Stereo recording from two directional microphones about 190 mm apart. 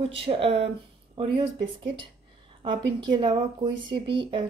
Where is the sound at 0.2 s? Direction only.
30° right (ahead or behind).